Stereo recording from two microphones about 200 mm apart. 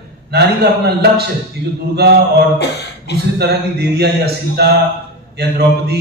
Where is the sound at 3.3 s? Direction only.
55° right (ahead or behind).